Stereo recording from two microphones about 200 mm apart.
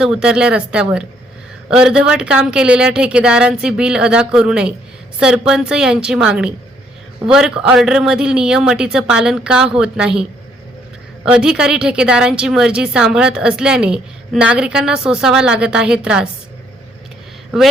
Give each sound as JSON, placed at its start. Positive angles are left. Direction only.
{"t": 0.0, "sound": "a woman's voice", "side_deg": -5}
{"t": 11.3, "sound": "a woman's voice", "side_deg": -5}